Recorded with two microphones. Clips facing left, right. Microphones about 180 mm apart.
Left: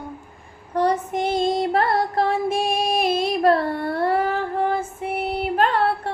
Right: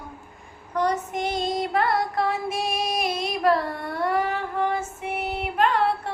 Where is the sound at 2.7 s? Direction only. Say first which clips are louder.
Left 5 dB; 30° left (ahead or behind).